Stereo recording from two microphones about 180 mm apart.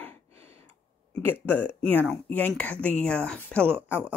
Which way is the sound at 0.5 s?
10° left (ahead or behind).